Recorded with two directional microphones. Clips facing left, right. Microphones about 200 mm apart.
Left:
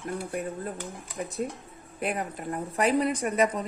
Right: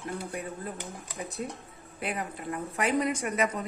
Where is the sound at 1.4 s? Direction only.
45° left (ahead or behind).